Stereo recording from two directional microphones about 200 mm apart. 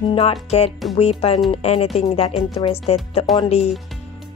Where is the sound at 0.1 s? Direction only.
30° left (ahead or behind).